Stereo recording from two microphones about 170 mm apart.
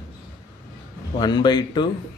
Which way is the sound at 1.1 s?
25° left (ahead or behind).